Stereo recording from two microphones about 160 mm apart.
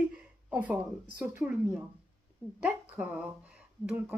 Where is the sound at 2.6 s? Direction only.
10° right (ahead or behind).